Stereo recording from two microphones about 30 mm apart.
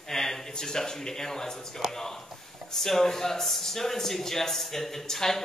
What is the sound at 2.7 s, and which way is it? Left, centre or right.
Speech, centre.